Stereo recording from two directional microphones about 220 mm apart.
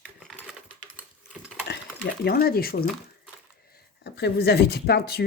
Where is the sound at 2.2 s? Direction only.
45° left (ahead or behind).